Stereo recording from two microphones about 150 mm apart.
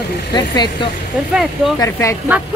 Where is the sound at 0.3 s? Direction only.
30° left (ahead or behind).